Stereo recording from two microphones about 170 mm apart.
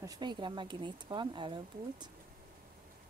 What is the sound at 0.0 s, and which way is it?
Speech, 25° right (ahead or behind).